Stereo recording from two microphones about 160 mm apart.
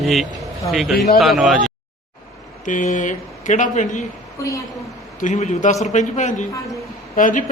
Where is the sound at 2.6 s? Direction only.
55° left (ahead or behind).